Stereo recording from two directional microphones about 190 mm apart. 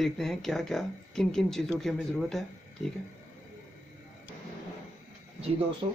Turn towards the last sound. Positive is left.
turn(degrees=-20)  # may be behind; listen again after turning